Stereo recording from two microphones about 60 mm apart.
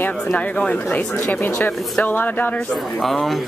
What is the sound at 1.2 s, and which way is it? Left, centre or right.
Speech, left.